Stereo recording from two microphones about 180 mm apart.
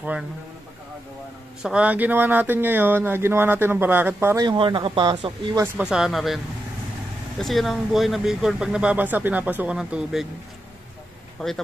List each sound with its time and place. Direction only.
1.6 s speech: 5° right (ahead or behind)
4.5 s speech: 25° right (ahead or behind)
5.6 s speech: 5° right (ahead or behind)
11.4 s speech: 5° left (ahead or behind)